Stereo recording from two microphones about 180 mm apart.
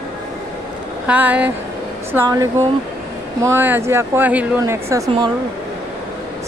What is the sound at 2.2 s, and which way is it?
A woman's voice, 20° right (ahead or behind).